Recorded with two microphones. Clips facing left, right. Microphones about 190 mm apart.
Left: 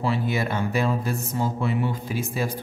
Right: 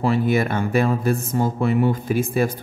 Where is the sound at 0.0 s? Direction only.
50° right (ahead or behind).